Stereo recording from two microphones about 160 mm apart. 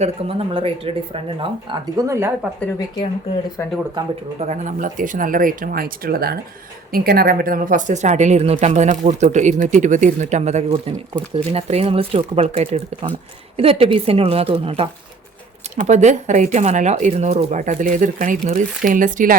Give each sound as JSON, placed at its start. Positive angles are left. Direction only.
{"t": 0.0, "sound": "a woman's voice", "side_deg": -35}
{"t": 2.0, "sound": "speech", "side_deg": -15}
{"t": 2.7, "sound": "speech", "side_deg": 25}
{"t": 4.4, "sound": "a woman's voice", "side_deg": -50}
{"t": 15.7, "sound": "speech", "side_deg": -50}